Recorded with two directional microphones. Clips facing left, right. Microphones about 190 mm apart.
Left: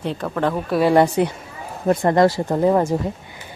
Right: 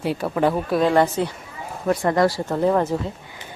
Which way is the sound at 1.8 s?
30° left (ahead or behind).